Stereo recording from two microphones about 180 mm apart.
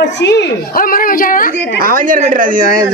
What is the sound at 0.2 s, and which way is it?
Speech, 75° left (ahead or behind).